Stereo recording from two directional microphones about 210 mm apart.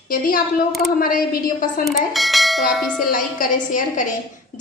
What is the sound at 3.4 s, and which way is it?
Speech, 40° left (ahead or behind).